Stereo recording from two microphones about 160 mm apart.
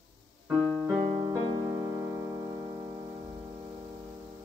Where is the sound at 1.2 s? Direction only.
25° right (ahead or behind).